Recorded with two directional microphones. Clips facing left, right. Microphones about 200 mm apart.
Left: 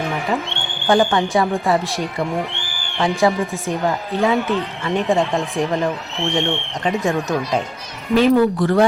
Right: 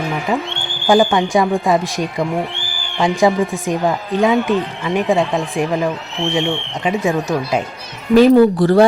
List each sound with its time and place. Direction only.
0.9 s speech: 15° right (ahead or behind)
5.2 s speech: centre (ahead or behind)
6.1 s speech: 15° right (ahead or behind)
8.1 s speech: 35° right (ahead or behind)